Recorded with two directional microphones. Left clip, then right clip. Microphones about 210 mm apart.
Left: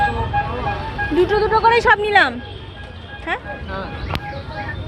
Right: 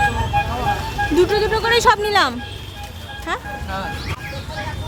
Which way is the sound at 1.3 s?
10° right (ahead or behind).